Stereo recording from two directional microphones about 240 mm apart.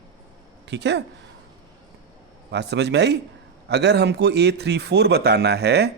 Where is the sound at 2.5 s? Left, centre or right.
Right.